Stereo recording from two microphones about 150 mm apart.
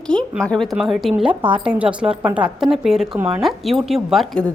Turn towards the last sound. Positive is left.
turn(degrees=5)  # may be behind; listen again after turning